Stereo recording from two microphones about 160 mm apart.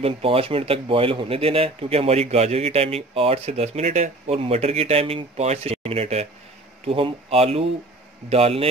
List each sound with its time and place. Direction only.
0.0 s speech: 35° right (ahead or behind)